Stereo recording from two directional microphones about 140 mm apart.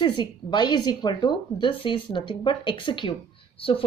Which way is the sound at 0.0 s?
30° left (ahead or behind).